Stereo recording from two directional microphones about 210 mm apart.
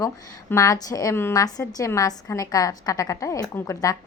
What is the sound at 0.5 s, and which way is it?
A woman's voice, 15° left (ahead or behind).